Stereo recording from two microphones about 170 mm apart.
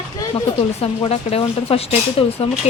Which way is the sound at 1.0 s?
35° left (ahead or behind).